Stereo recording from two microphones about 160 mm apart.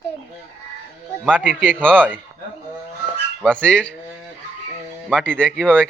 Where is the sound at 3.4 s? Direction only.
5° left (ahead or behind).